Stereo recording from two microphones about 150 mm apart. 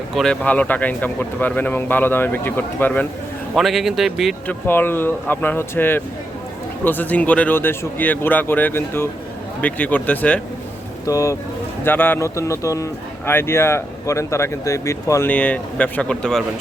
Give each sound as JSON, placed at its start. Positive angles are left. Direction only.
{"t": 0.1, "sound": "speech", "side_deg": 0}
{"t": 3.5, "sound": "speech", "side_deg": 0}
{"t": 4.4, "sound": "speech", "side_deg": 15}
{"t": 11.0, "sound": "speech", "side_deg": 25}
{"t": 11.9, "sound": "speech", "side_deg": 15}
{"t": 15.3, "sound": "speech", "side_deg": 10}